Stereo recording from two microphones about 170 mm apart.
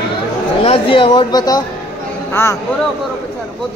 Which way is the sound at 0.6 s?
35° left (ahead or behind).